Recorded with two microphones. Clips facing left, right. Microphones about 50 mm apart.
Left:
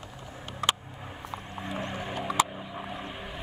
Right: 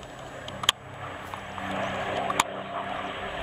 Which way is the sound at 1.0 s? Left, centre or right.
Right.